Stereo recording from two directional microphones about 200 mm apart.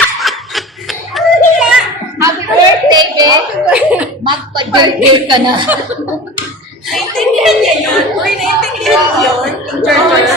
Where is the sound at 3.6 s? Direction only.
5° right (ahead or behind).